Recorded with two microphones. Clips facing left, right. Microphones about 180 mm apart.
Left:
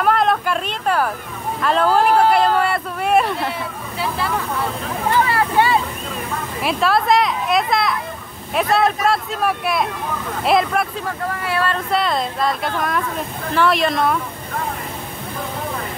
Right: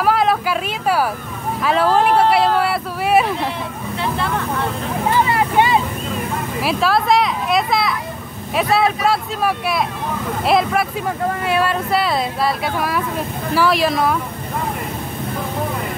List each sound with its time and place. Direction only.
0.0 s a sound: 5° right (ahead or behind)
1.6 s vehicle: 5° right (ahead or behind)
5.2 s vehicle: 20° right (ahead or behind)
6.6 s speech: centre (ahead or behind)
11.1 s speech: 15° right (ahead or behind)